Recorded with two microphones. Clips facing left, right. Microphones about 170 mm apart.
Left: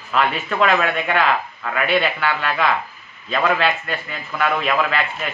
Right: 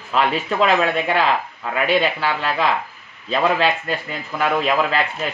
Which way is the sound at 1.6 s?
25° right (ahead or behind).